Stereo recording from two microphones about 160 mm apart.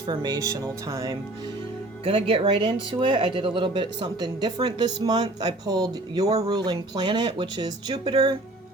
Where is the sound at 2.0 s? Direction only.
35° right (ahead or behind).